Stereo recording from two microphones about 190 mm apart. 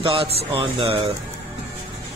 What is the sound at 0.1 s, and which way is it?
Speech, 30° right (ahead or behind).